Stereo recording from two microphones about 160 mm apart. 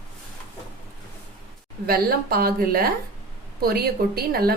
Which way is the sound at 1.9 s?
70° right (ahead or behind).